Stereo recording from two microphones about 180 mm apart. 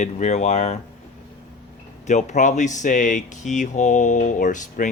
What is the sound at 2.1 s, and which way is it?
Speech, 40° left (ahead or behind).